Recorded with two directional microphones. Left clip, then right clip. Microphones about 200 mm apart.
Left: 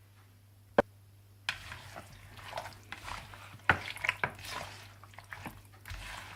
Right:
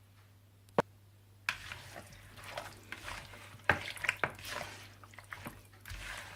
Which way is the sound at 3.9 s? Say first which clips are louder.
Left 1 dB; centre (ahead or behind).